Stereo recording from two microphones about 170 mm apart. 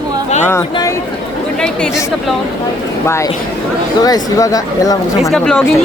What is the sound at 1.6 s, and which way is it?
Speech, 5° left (ahead or behind).